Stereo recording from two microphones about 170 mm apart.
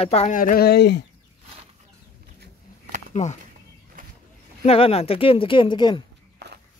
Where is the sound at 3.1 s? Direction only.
40° left (ahead or behind).